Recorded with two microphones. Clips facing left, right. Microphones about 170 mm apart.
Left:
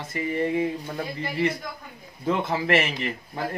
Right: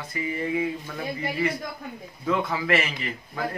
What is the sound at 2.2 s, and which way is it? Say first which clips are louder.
Speech: left 1 dB; 25° left (ahead or behind).